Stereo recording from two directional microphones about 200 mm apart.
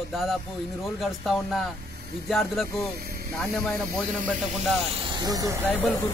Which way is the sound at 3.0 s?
50° right (ahead or behind).